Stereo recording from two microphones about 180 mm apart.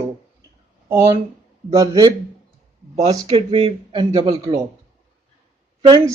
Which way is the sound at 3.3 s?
30° right (ahead or behind).